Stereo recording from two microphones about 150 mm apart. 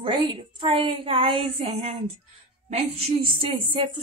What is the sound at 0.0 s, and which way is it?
A woman's voice, 35° right (ahead or behind).